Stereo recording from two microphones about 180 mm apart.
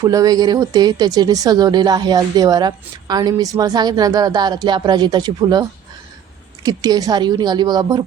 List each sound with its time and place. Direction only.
0.0 s speech: 20° right (ahead or behind)